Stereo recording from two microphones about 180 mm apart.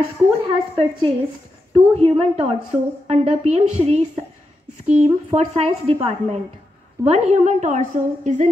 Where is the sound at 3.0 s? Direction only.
40° right (ahead or behind).